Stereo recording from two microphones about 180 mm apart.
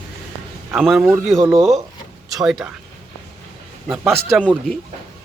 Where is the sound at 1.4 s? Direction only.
20° right (ahead or behind).